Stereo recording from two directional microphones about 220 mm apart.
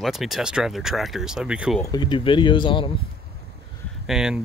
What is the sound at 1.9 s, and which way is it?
Speech, 20° left (ahead or behind).